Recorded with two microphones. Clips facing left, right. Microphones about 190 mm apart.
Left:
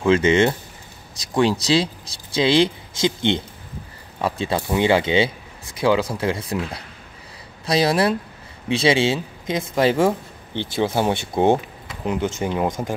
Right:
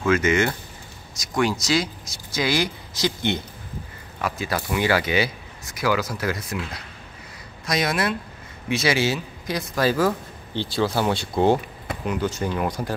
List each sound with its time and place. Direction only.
0.1 s speech: 30° left (ahead or behind)